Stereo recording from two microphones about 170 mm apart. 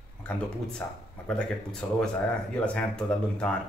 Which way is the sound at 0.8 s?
10° left (ahead or behind).